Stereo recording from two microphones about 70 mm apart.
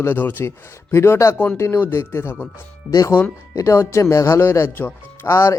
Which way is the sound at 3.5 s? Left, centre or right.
Left.